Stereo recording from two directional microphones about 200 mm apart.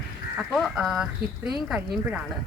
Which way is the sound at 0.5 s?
Centre (ahead or behind).